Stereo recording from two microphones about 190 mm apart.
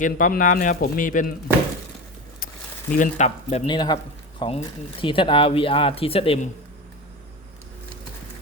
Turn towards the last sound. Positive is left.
turn(degrees=30)  # may be behind; listen again after turning